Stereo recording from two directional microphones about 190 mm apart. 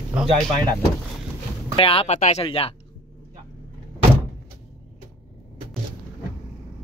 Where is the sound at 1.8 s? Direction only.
30° left (ahead or behind).